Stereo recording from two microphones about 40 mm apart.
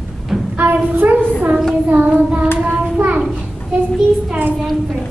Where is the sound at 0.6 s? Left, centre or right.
Right.